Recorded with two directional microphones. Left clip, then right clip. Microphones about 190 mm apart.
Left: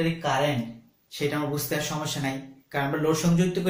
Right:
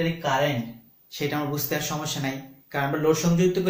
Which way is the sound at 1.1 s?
20° right (ahead or behind).